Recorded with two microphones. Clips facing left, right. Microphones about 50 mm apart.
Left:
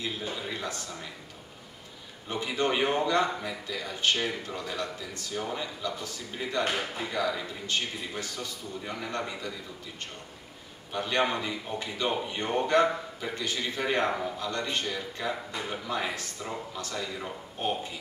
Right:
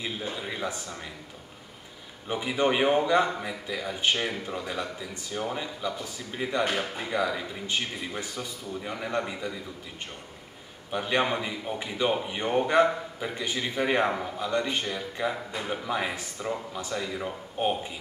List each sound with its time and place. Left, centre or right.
0.4 s a sound: centre
2.2 s a man's voice: centre
10.9 s a man's voice: centre